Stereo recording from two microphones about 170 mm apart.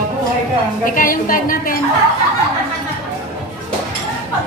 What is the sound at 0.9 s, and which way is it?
Speech, 55° left (ahead or behind).